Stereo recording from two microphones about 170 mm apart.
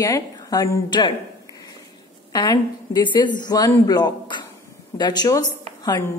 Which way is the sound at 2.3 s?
25° left (ahead or behind).